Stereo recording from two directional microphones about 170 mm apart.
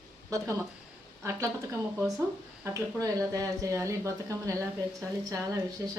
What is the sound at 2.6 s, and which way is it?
Speech, 20° right (ahead or behind).